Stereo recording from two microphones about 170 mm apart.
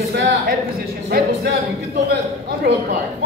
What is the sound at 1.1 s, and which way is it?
A man's voice, 70° right (ahead or behind).